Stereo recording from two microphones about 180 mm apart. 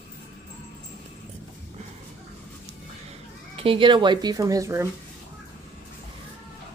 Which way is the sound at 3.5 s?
30° right (ahead or behind).